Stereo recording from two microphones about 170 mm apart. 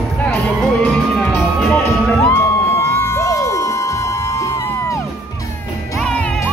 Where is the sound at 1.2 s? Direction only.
5° left (ahead or behind).